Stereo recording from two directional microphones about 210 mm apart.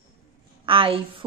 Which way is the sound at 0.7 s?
25° right (ahead or behind).